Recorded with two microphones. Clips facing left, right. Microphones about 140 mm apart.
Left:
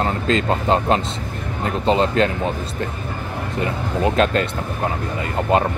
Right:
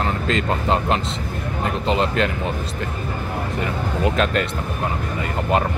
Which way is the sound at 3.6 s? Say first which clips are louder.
Left 3 dB; 30° left (ahead or behind).